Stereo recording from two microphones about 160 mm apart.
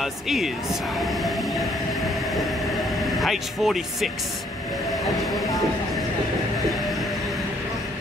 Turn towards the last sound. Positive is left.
turn(degrees=0)  # may be behind; listen again after turning